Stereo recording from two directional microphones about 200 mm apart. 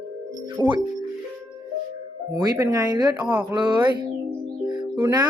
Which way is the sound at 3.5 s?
20° right (ahead or behind).